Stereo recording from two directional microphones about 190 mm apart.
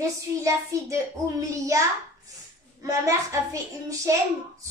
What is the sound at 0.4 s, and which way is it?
A child's voice, 15° right (ahead or behind).